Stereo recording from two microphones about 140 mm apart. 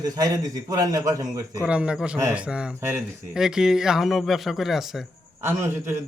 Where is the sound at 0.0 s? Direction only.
25° right (ahead or behind).